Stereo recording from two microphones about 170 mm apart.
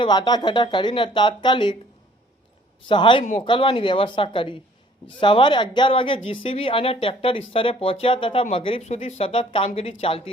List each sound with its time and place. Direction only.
0.0 s speech: 25° left (ahead or behind)
2.9 s speech: 30° left (ahead or behind)